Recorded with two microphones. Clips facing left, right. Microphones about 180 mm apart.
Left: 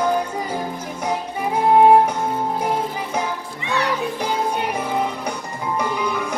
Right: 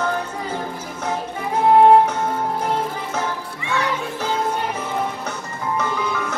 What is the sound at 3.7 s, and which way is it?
Music, 15° left (ahead or behind).